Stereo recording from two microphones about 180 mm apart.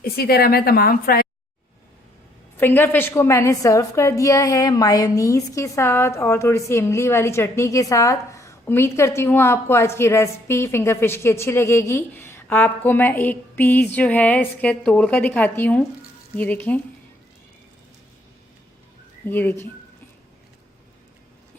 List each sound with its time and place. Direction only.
0.0 s a woman's voice: 60° left (ahead or behind)
2.6 s a woman's voice: 10° left (ahead or behind)
19.3 s a woman's voice: 10° left (ahead or behind)